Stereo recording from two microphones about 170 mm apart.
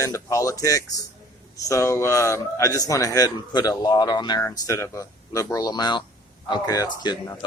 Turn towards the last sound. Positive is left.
turn(degrees=25)  # may be behind; listen again after turning